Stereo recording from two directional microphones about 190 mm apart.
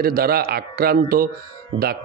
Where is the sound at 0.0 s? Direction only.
50° right (ahead or behind).